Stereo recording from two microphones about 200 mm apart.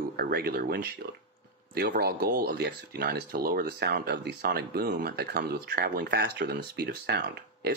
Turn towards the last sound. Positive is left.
turn(degrees=-55)  # may be behind; listen again after turning